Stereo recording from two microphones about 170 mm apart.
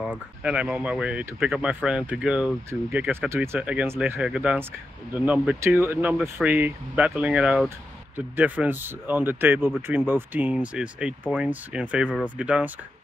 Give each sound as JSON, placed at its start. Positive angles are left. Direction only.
{"t": 0.0, "sound": "speech", "side_deg": -5}